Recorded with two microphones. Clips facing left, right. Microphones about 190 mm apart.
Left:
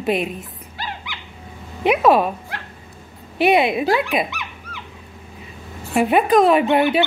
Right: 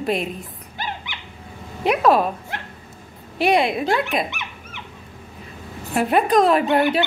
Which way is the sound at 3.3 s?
5° left (ahead or behind).